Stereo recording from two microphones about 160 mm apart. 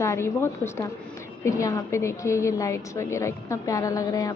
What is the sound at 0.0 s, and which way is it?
A woman's voice, 15° left (ahead or behind).